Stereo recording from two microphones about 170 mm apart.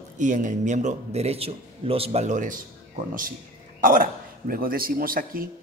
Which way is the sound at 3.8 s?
55° right (ahead or behind).